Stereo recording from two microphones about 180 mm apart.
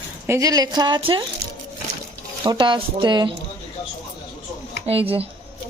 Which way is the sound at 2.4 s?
25° right (ahead or behind).